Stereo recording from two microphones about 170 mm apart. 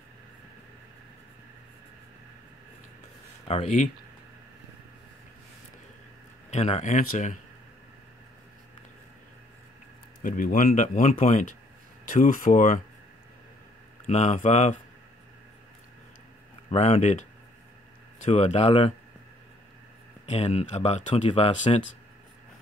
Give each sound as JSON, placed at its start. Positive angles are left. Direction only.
{"t": 3.4, "sound": "speech", "side_deg": 40}
{"t": 6.5, "sound": "speech", "side_deg": 40}
{"t": 10.2, "sound": "speech", "side_deg": 55}
{"t": 14.0, "sound": "speech", "side_deg": 40}
{"t": 16.7, "sound": "speech", "side_deg": 40}
{"t": 20.2, "sound": "speech", "side_deg": 40}